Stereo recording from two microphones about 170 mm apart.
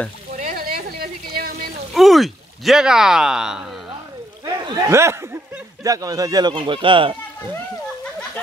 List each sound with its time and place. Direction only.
0.4 s a sound: 60° right (ahead or behind)
2.0 s speech: centre (ahead or behind)
4.5 s speech: 20° right (ahead or behind)